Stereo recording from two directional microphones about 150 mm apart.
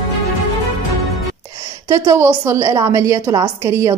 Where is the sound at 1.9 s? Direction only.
20° right (ahead or behind).